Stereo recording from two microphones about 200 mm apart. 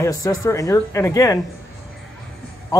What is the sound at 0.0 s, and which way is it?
Speech, 15° left (ahead or behind).